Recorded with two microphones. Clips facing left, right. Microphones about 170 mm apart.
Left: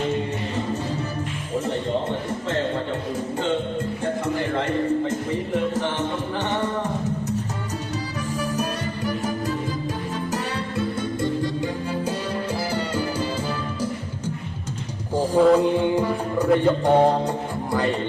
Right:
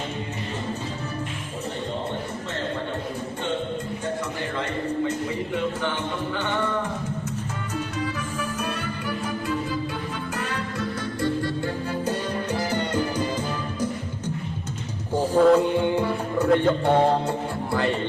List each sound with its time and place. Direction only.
9.0 s music: 40° left (ahead or behind)
10.8 s music: 20° left (ahead or behind)
15.1 s music: 10° left (ahead or behind)